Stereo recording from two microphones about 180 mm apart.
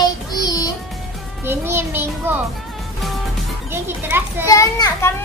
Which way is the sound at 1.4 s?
15° right (ahead or behind).